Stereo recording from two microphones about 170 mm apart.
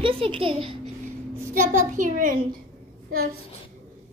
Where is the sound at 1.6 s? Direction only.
50° right (ahead or behind).